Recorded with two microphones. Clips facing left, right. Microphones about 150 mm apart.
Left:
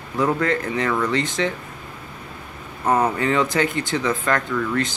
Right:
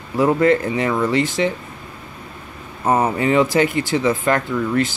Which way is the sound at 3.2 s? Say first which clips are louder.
Right 4 dB; 20° right (ahead or behind).